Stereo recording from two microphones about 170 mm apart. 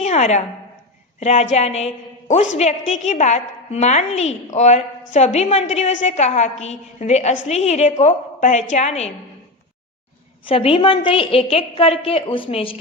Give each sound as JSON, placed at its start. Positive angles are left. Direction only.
{"t": 0.0, "sound": "a woman's voice", "side_deg": 40}
{"t": 10.4, "sound": "a woman's voice", "side_deg": 35}